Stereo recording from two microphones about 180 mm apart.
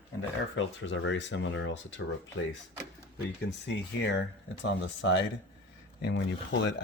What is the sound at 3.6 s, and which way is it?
Speech, 90° left.